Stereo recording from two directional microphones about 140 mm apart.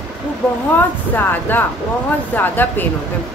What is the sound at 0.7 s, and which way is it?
A woman's voice, 15° left (ahead or behind).